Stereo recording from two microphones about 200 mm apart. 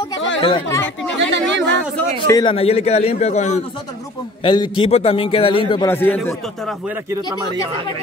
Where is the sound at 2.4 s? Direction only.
30° left (ahead or behind).